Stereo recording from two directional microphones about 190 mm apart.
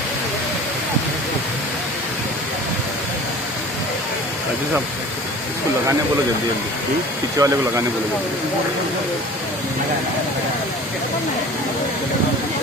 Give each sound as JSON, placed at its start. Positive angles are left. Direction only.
{"t": 7.3, "sound": "speech", "side_deg": -15}